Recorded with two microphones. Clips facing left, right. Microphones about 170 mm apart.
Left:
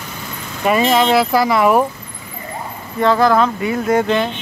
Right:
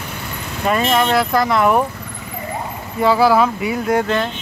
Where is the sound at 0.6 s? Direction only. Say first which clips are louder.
Left 3 dB; 5° left (ahead or behind).